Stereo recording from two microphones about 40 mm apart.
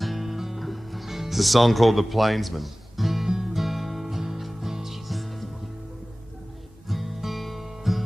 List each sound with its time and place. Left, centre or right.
0.0 s music: centre
6.9 s music: centre